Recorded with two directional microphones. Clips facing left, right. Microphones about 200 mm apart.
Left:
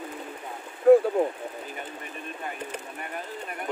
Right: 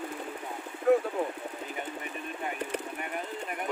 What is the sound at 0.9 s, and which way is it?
Speech, 35° left (ahead or behind).